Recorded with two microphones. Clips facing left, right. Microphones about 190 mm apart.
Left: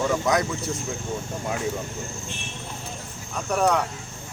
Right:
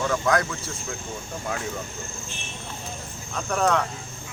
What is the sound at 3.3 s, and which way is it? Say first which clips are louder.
Speech: left 1 dB; 10° left (ahead or behind).